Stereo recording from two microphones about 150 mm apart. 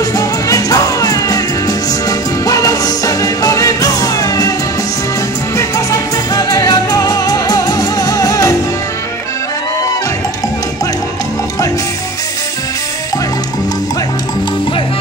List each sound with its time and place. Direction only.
0.1 s music: 25° left (ahead or behind)
5.6 s music: 20° left (ahead or behind)